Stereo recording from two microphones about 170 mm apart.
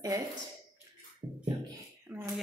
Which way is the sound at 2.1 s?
5° right (ahead or behind).